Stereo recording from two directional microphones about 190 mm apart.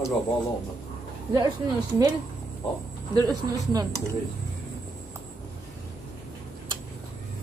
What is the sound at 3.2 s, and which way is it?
Speech, 20° right (ahead or behind).